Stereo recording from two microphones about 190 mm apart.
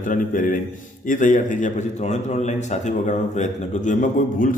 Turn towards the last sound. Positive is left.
turn(degrees=40)  # may be behind; listen again after turning